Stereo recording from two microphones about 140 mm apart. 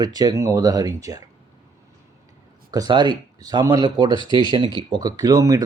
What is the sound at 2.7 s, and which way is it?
Speech, 30° right (ahead or behind).